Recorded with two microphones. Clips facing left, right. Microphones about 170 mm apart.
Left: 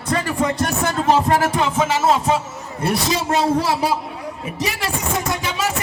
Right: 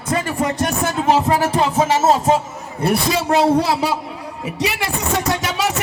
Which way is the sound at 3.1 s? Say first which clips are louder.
Right 4 dB; 65° right (ahead or behind).